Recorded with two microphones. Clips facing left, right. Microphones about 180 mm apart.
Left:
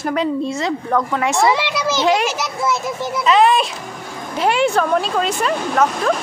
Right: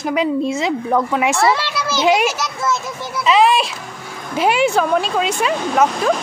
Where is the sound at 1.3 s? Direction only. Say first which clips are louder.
Left 1 dB; 15° left (ahead or behind).